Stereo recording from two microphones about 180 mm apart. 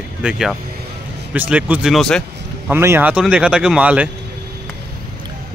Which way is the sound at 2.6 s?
15° right (ahead or behind).